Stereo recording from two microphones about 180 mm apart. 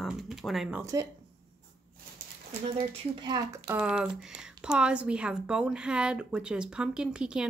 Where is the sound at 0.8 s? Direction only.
15° right (ahead or behind).